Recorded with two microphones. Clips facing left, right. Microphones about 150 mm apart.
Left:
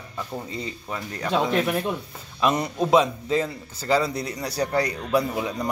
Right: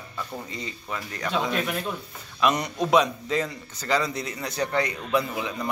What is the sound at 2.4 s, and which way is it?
A man's voice, 25° left (ahead or behind).